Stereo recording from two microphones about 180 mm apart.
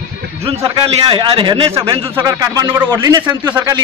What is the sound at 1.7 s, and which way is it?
Speech, 20° right (ahead or behind).